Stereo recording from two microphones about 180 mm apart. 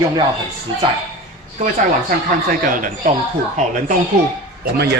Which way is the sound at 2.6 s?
50° right (ahead or behind).